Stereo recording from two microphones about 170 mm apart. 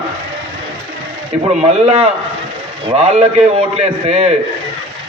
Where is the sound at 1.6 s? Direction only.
35° right (ahead or behind).